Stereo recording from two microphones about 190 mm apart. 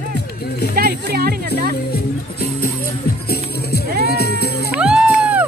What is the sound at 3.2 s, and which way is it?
Music, 55° left (ahead or behind).